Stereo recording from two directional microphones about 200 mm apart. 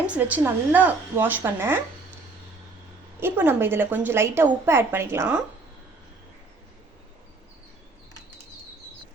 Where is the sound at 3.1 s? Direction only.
10° right (ahead or behind).